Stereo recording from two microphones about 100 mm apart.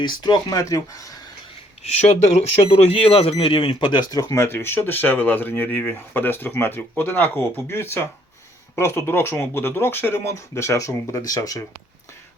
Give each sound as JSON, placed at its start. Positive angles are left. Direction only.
{"t": 0.0, "sound": "speech", "side_deg": 45}
{"t": 1.8, "sound": "speech", "side_deg": 90}
{"t": 4.1, "sound": "speech", "side_deg": 35}
{"t": 4.4, "sound": "speech", "side_deg": 25}